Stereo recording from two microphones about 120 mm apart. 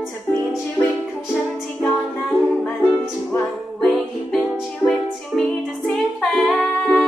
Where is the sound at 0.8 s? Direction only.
25° left (ahead or behind).